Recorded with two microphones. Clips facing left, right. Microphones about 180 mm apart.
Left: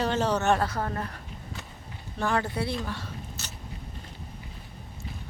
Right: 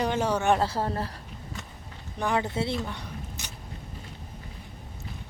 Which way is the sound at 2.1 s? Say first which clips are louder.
Right 1 dB; 20° right (ahead or behind).